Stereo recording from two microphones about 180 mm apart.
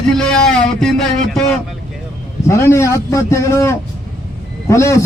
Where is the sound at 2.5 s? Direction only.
15° left (ahead or behind).